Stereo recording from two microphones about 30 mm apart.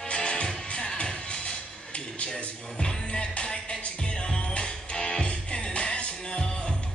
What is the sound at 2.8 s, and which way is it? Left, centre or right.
Music, left.